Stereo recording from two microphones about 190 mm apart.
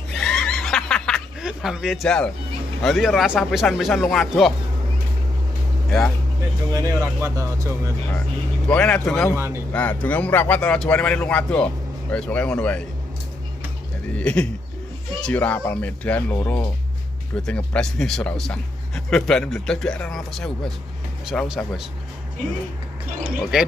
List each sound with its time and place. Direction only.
0.1 s snicker: 5° left (ahead or behind)
2.8 s speech: centre (ahead or behind)
5.9 s speech: centre (ahead or behind)
6.7 s speech: 15° right (ahead or behind)
8.6 s speech: 5° left (ahead or behind)
9.3 s speech: 15° right (ahead or behind)
9.7 s speech: 10° left (ahead or behind)
14.1 s speech: 5° left (ahead or behind)
23.5 s speech: 5° right (ahead or behind)